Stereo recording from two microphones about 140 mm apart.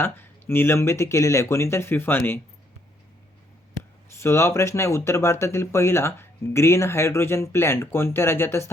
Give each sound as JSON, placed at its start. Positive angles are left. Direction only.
{"t": 0.0, "sound": "speech", "side_deg": 15}
{"t": 4.2, "sound": "speech", "side_deg": 20}